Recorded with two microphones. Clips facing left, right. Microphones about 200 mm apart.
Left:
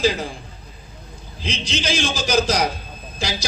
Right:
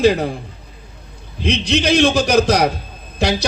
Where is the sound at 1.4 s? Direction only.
60° right (ahead or behind).